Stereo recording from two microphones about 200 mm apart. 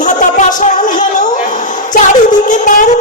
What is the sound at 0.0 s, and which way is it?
Music, 40° left (ahead or behind).